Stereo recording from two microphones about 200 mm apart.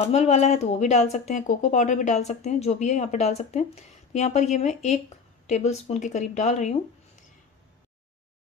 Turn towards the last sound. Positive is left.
turn(degrees=35)  # may be behind; listen again after turning